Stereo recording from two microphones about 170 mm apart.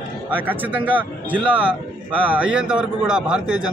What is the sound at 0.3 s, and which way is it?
A man's voice, 10° right (ahead or behind).